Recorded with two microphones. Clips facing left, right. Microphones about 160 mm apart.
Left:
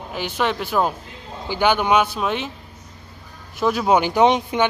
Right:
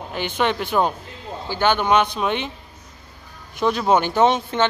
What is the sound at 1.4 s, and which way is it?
Speech, 10° left (ahead or behind).